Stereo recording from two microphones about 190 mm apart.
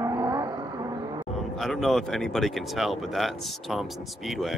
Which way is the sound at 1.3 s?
Centre (ahead or behind).